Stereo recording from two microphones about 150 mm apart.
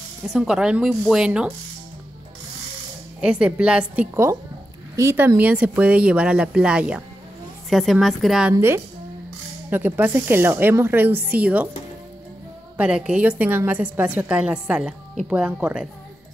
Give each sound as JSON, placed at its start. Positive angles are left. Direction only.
{"t": 0.3, "sound": "speech", "side_deg": -5}
{"t": 3.2, "sound": "a woman's voice", "side_deg": -5}
{"t": 12.7, "sound": "a woman's voice", "side_deg": -10}